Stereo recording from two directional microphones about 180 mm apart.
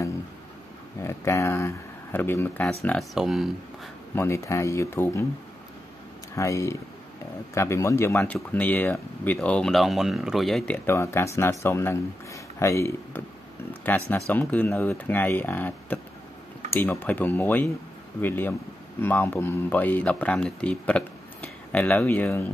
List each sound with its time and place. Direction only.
1.0 s speech: 15° left (ahead or behind)
3.0 s speech: centre (ahead or behind)
4.1 s speech: 15° left (ahead or behind)
6.3 s speech: 15° left (ahead or behind)